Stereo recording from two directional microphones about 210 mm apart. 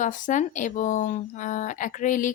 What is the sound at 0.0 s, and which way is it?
Speech, 35° left (ahead or behind).